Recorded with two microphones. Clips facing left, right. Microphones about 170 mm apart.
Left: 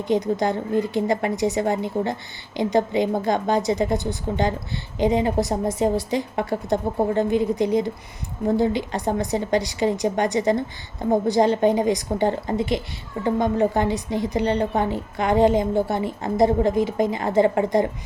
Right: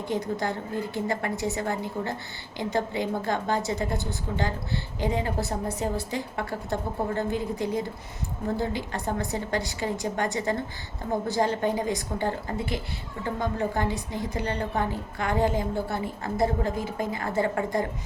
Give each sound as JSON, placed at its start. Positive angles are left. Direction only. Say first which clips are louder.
{"t": 0.0, "sound": "a woman's voice", "louder": "left 7 dB", "side_deg": 15}